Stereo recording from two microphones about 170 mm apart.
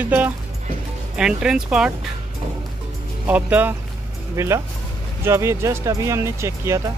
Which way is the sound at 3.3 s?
10° right (ahead or behind).